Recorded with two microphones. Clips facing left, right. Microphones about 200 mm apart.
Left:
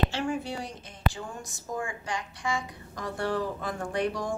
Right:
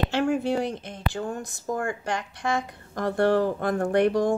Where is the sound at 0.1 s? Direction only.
65° right (ahead or behind).